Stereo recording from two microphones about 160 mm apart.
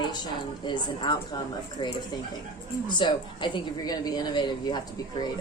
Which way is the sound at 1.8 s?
25° left (ahead or behind).